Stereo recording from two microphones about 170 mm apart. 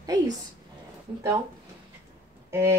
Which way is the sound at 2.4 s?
15° right (ahead or behind).